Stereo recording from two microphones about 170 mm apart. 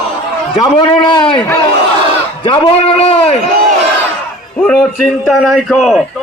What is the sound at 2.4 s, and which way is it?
A man's voice, 30° left (ahead or behind).